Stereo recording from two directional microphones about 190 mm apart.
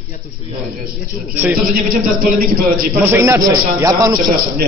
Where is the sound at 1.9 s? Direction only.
50° right (ahead or behind).